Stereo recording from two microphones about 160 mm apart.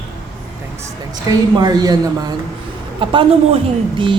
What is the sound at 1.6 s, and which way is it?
A woman's voice, 25° right (ahead or behind).